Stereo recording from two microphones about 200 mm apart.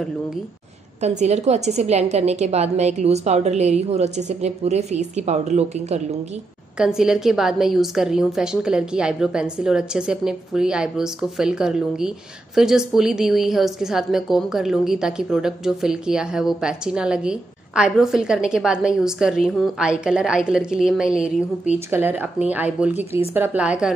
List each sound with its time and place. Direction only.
1.0 s a woman's voice: 35° right (ahead or behind)
6.8 s a woman's voice: 5° right (ahead or behind)